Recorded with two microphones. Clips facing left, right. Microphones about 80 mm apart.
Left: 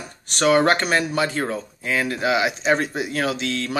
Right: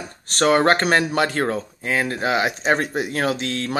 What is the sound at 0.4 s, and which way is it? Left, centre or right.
Speech, right.